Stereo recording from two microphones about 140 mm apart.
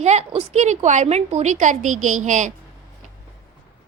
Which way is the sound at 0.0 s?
55° right (ahead or behind).